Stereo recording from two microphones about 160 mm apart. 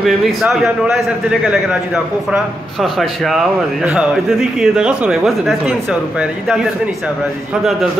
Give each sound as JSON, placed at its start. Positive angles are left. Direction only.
{"t": 0.0, "sound": "speech", "side_deg": 0}